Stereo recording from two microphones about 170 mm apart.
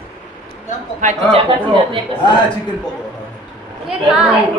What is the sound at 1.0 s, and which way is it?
Speech, 35° right (ahead or behind).